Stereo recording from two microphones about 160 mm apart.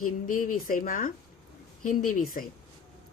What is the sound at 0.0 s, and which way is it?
Speech, 60° left (ahead or behind).